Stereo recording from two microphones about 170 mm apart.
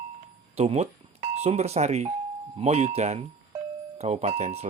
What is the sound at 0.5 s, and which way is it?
Telephone dialing, 40° right (ahead or behind).